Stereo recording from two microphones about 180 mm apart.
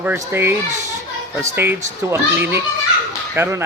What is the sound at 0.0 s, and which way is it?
Speech, 10° right (ahead or behind).